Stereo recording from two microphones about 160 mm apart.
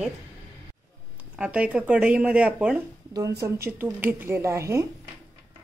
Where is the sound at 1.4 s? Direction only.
5° right (ahead or behind).